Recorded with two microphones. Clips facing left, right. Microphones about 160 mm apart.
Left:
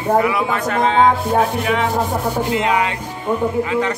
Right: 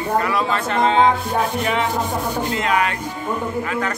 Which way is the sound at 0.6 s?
Centre (ahead or behind).